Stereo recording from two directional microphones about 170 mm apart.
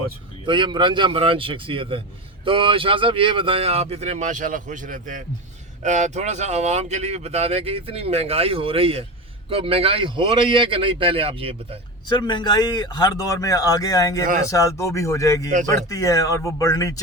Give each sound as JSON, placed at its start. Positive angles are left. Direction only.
{"t": 0.4, "sound": "speech", "side_deg": -30}
{"t": 12.0, "sound": "a man's voice", "side_deg": 25}